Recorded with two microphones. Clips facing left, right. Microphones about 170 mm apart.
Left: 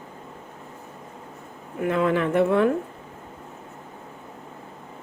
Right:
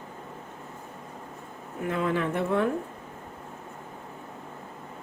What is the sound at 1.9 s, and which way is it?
Speech, 75° left (ahead or behind).